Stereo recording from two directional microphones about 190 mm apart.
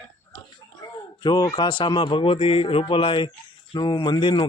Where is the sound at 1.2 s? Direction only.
20° left (ahead or behind).